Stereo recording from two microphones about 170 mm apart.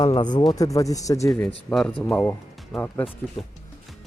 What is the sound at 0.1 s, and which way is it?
Speech, 25° left (ahead or behind).